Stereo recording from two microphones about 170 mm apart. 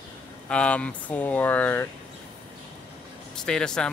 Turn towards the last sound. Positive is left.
turn(degrees=5)  # may be behind; listen again after turning